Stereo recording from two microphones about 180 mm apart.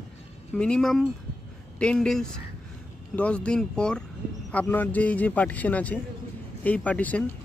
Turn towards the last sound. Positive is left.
turn(degrees=10)  # may be behind; listen again after turning